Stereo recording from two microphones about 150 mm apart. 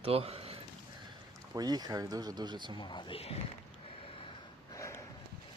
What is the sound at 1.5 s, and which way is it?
Speech, 25° right (ahead or behind).